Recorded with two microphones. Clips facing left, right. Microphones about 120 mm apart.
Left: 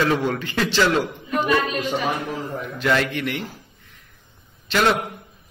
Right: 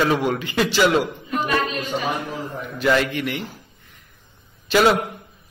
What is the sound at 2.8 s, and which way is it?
Mantra, 5° right (ahead or behind).